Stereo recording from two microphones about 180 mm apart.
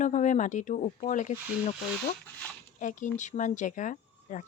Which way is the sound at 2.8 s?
45° left (ahead or behind).